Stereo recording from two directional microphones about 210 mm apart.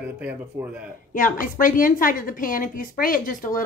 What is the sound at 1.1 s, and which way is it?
A woman's voice, 40° left (ahead or behind).